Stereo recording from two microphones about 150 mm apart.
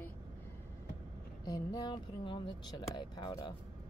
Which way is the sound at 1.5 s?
25° left (ahead or behind).